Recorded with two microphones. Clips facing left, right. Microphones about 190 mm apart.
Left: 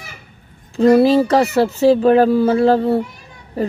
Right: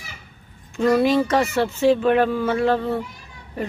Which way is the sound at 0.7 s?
35° left (ahead or behind).